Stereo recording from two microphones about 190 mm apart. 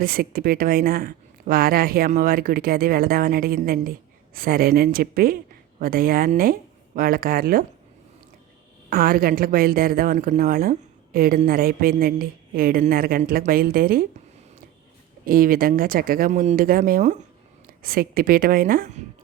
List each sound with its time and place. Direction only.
0.0 s a woman's voice: 50° right (ahead or behind)
8.9 s a woman's voice: 50° right (ahead or behind)
15.3 s a woman's voice: 50° right (ahead or behind)